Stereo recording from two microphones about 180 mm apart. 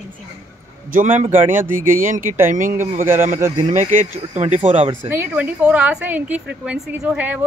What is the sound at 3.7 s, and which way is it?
Speech, 45° right (ahead or behind).